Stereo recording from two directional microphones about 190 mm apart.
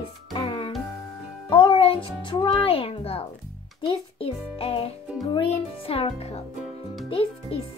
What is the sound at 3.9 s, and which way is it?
Music, 30° left (ahead or behind).